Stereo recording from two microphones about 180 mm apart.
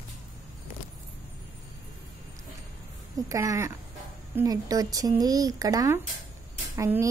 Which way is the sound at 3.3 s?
15° right (ahead or behind).